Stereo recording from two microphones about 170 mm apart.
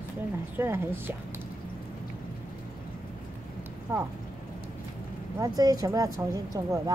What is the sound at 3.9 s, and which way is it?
Speech, 15° right (ahead or behind).